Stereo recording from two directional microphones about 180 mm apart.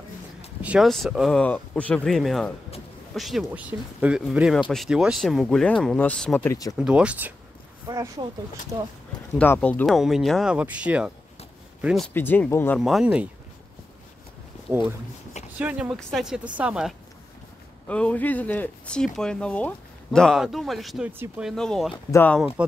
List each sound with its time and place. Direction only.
0.6 s speech: 5° right (ahead or behind); by 6.7 s 15° left (ahead or behind)
6.8 s speech: 5° right (ahead or behind)
7.9 s speech: 20° right (ahead or behind)
9.4 s speech: 10° left (ahead or behind)
12.1 s speech: 10° left (ahead or behind)
12.8 s speech: 5° right (ahead or behind)
15.3 s a sound: 40° left (ahead or behind)
16.0 s speech: centre (ahead or behind)
17.8 s speech: 5° left (ahead or behind)
21.1 s speech: 10° right (ahead or behind)
21.5 s speech: centre (ahead or behind)